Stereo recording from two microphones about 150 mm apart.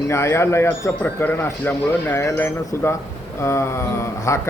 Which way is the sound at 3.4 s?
20° left (ahead or behind).